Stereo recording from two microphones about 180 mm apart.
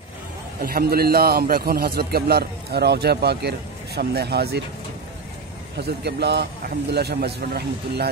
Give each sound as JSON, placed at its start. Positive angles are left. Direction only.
{"t": 0.6, "sound": "a man's voice", "side_deg": -55}
{"t": 5.8, "sound": "a man's voice", "side_deg": -65}